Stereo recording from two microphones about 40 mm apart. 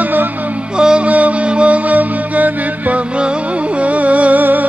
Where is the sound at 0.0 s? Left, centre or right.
Right.